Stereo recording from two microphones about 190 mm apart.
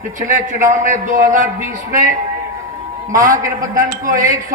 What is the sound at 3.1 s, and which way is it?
A man's voice, 45° right (ahead or behind).